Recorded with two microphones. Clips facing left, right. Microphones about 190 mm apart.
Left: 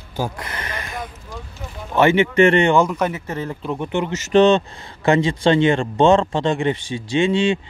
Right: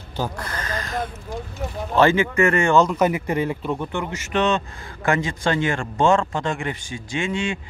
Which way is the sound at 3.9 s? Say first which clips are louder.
Left 5 dB; 25° left (ahead or behind).